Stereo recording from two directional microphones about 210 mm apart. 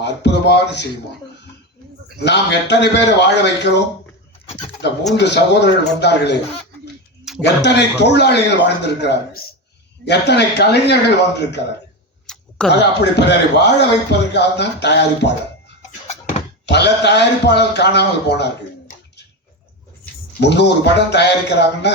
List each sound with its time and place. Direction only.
0.0 s beatboxing: 55° left (ahead or behind)
2.1 s speech: 55° left (ahead or behind)
5.1 s speech: 55° left (ahead or behind)
7.4 s speech: 55° left (ahead or behind)
12.3 s a sound: 5° left (ahead or behind)
12.7 s speech: 55° left (ahead or behind)
15.9 s a sound: 35° left (ahead or behind)
16.6 s speech: 55° left (ahead or behind)
20.4 s speech: 55° left (ahead or behind)